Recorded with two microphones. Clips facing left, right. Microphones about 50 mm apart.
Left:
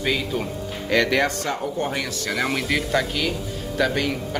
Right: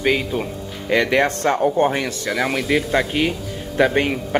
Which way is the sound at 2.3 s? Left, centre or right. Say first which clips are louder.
Right 2 dB; centre.